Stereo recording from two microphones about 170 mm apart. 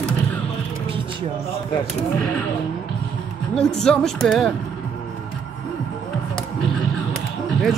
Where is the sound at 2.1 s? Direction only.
5° left (ahead or behind).